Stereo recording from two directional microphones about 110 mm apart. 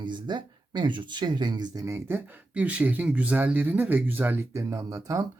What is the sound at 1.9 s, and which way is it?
Speech, 20° right (ahead or behind).